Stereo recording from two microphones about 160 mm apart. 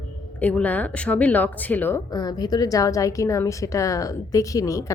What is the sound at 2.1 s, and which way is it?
A woman's voice, 25° left (ahead or behind).